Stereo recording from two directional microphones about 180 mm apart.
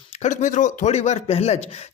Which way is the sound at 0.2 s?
40° left (ahead or behind).